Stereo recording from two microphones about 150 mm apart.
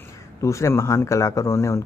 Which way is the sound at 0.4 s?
20° left (ahead or behind).